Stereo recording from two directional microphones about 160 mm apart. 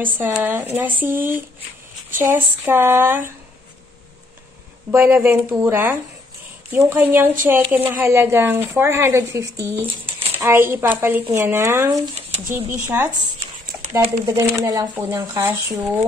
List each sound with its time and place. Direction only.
0.0 s a woman's voice: 10° right (ahead or behind)
4.9 s a woman's voice: 15° right (ahead or behind)
14.6 s a woman's voice: 20° right (ahead or behind)